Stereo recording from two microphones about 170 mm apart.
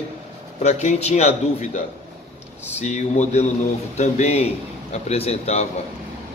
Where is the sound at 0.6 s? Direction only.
40° left (ahead or behind).